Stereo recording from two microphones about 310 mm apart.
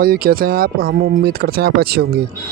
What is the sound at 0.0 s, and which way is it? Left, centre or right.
Speech, right.